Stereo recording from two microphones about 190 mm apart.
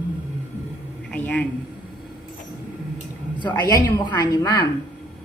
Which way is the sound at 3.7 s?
10° left (ahead or behind).